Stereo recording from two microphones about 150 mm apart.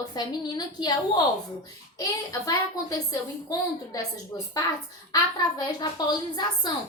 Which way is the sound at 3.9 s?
25° left (ahead or behind).